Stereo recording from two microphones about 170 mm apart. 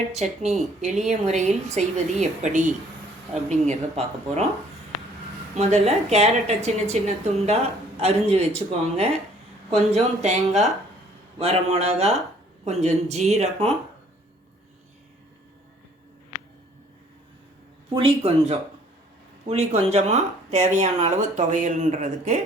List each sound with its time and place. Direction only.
0.1 s a woman's voice: 40° right (ahead or behind)
5.5 s speech: 40° right (ahead or behind)
17.8 s speech: 30° right (ahead or behind)